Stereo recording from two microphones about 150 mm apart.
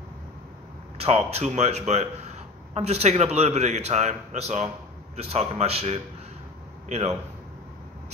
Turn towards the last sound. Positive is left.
turn(degrees=-45)  # may be behind; listen again after turning